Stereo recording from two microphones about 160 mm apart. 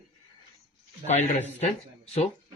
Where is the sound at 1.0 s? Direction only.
45° left (ahead or behind).